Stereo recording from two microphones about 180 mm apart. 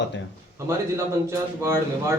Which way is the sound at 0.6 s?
15° right (ahead or behind).